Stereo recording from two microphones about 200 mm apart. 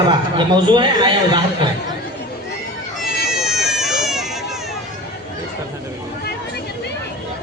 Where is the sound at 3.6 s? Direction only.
Centre (ahead or behind).